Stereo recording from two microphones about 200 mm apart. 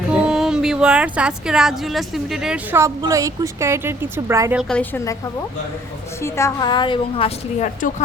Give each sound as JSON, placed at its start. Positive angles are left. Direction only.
{"t": 0.1, "sound": "speech", "side_deg": -5}
{"t": 2.8, "sound": "speech", "side_deg": -15}
{"t": 6.2, "sound": "a woman's voice", "side_deg": 15}